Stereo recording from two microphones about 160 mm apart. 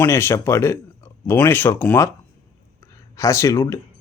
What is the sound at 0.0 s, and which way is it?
Speech, 15° left (ahead or behind).